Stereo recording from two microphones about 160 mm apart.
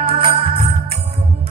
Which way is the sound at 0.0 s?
35° right (ahead or behind).